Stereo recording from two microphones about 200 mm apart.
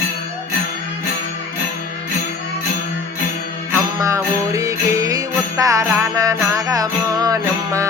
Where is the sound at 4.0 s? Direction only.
15° right (ahead or behind).